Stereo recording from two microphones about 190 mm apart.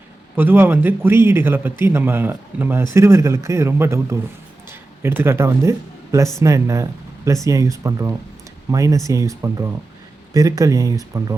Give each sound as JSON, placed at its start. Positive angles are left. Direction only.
{"t": 0.3, "sound": "a man's voice", "side_deg": -10}